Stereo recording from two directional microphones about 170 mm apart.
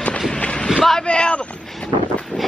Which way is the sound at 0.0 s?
5° left (ahead or behind).